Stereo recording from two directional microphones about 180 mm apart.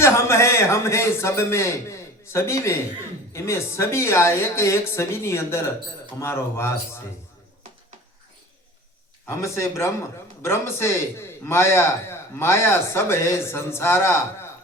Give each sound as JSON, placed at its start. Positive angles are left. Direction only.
{"t": 0.0, "sound": "a man's voice", "side_deg": 15}
{"t": 9.2, "sound": "a man's voice", "side_deg": 15}